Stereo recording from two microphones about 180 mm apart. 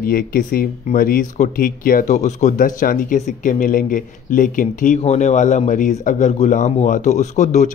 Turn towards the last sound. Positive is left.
turn(degrees=40)  # may be behind; listen again after turning